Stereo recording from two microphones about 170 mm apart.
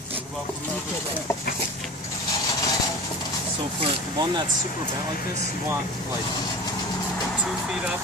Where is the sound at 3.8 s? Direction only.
25° right (ahead or behind).